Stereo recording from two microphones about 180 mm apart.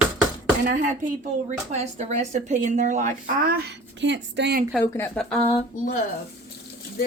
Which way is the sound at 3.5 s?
70° right (ahead or behind).